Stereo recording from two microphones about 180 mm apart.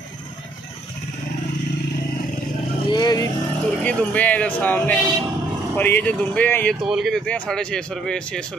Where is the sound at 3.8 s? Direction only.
10° left (ahead or behind).